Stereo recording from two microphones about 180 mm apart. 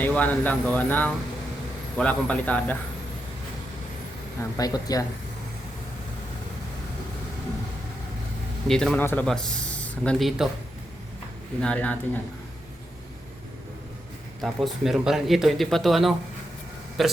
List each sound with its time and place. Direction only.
0.0 s speech: 10° left (ahead or behind)
4.5 s speech: 20° left (ahead or behind)
8.6 s speech: 5° left (ahead or behind)
11.6 s speech: 5° left (ahead or behind)
14.4 s speech: centre (ahead or behind)